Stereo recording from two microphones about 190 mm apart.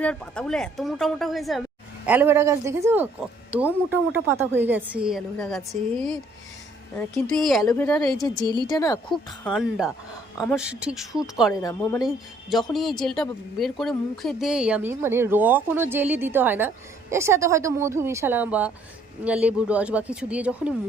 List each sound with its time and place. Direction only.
0.0 s a woman's voice: 5° left (ahead or behind)
2.0 s a woman's voice: 10° right (ahead or behind); by 8.0 s 5° left (ahead or behind)
8.0 s a woman's voice: 20° left (ahead or behind)
9.4 s a woman's voice: centre (ahead or behind)
11.6 s a woman's voice: 15° left (ahead or behind)
12.0 s speech: centre (ahead or behind)